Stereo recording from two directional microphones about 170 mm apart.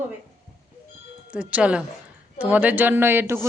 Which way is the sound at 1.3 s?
5° right (ahead or behind).